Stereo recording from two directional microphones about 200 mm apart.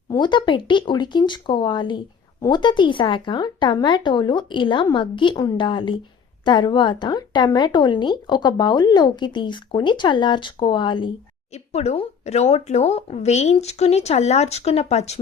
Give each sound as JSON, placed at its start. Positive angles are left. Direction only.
{"t": 0.1, "sound": "speech", "side_deg": 25}